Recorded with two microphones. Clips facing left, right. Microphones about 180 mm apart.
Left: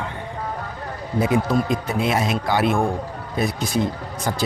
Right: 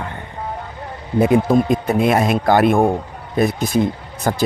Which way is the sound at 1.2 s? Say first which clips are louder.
Right 6 dB; 55° right (ahead or behind).